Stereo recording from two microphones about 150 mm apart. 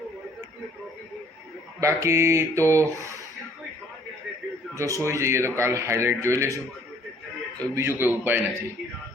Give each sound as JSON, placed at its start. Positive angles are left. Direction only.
{"t": 1.8, "sound": "speech", "side_deg": -20}
{"t": 4.7, "sound": "speech", "side_deg": -20}
{"t": 7.8, "sound": "a man's voice", "side_deg": -15}